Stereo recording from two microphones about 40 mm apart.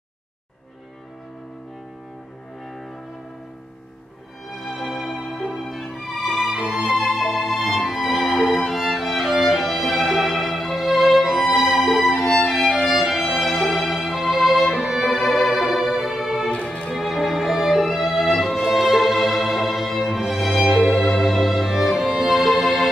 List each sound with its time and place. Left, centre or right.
4.5 s music: centre
12.9 s violin: centre
15.0 s music: centre
16.4 s music: left
16.9 s music: centre